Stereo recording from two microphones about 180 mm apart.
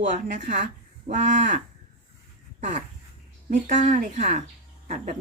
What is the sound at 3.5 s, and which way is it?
Speech, 40° right (ahead or behind).